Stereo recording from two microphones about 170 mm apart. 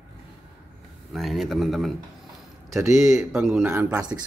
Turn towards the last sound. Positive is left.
turn(degrees=-5)  # may be behind; listen again after turning